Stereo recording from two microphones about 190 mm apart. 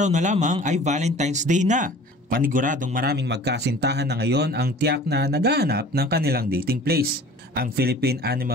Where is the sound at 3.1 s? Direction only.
65° right (ahead or behind).